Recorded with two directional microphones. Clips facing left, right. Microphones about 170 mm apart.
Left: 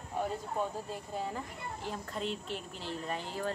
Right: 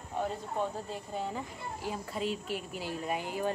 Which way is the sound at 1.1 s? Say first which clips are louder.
Right 1 dB; centre (ahead or behind).